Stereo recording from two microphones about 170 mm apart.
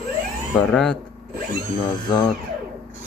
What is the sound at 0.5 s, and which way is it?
Speech, 5° left (ahead or behind).